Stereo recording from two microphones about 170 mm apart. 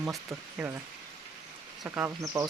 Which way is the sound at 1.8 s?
10° right (ahead or behind).